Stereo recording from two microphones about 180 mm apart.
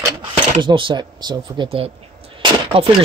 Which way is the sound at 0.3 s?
25° right (ahead or behind).